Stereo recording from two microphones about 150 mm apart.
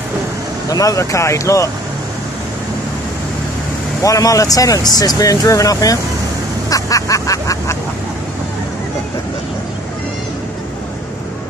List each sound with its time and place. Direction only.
0.7 s speech: 25° left (ahead or behind)
4.0 s speech: 20° left (ahead or behind)
6.7 s vehicle: 20° left (ahead or behind)